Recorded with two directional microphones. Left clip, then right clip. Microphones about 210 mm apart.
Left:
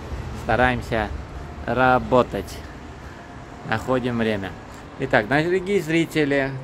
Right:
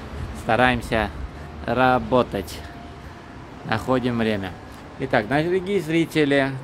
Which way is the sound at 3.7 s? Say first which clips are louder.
Even; 15° right (ahead or behind).